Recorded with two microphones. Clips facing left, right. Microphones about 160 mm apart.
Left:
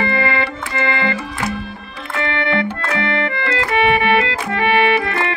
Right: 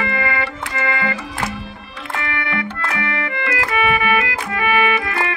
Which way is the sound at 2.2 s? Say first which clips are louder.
Left 7 dB; 25° left (ahead or behind).